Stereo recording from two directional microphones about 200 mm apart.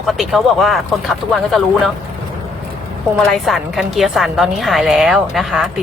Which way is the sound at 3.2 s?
Centre (ahead or behind).